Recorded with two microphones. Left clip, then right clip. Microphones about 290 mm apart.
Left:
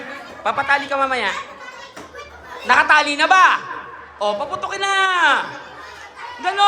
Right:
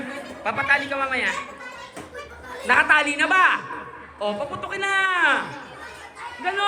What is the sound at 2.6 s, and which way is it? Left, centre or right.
Speech, centre.